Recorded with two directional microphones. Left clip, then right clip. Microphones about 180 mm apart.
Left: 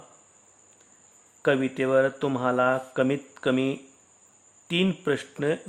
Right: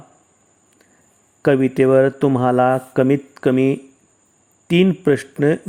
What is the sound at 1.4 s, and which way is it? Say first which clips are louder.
Speech: right 9 dB; 30° right (ahead or behind).